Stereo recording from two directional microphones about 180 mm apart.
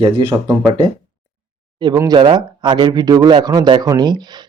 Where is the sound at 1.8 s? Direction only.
20° right (ahead or behind).